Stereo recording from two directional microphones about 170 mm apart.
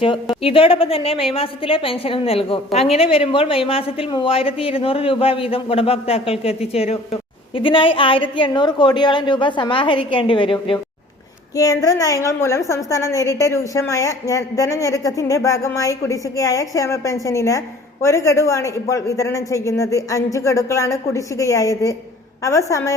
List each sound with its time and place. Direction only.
0.0 s speech: 30° left (ahead or behind)
11.5 s a woman's voice: 20° left (ahead or behind)